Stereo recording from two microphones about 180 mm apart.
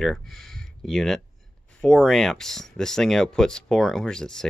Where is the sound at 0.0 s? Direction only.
Centre (ahead or behind).